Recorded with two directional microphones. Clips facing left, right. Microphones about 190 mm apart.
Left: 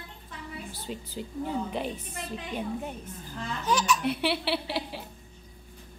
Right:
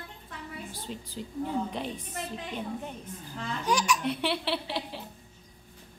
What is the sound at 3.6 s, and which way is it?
Speech, 15° right (ahead or behind).